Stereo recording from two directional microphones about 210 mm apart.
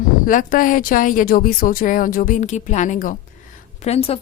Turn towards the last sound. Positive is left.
turn(degrees=30)  # may be behind; listen again after turning